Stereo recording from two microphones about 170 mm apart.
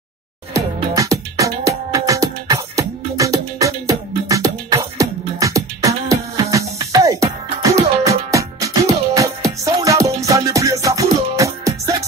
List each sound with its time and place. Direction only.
0.6 s music: 20° right (ahead or behind)